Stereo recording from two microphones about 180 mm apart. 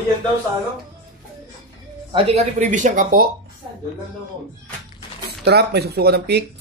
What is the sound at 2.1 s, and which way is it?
Speech, 35° right (ahead or behind).